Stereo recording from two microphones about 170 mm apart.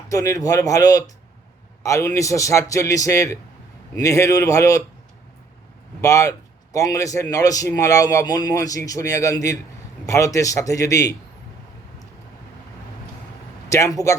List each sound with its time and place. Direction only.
0.1 s a man's voice: 20° left (ahead or behind)
6.0 s a man's voice: 20° left (ahead or behind)
13.7 s a man's voice: 20° left (ahead or behind)